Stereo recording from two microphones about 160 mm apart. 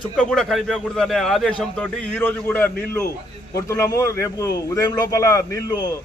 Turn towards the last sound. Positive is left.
turn(degrees=25)  # may be behind; listen again after turning